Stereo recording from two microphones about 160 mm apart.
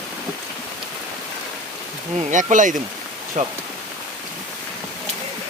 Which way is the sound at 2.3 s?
50° right (ahead or behind).